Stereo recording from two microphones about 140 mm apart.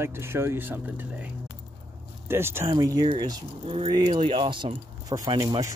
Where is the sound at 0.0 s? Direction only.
20° right (ahead or behind).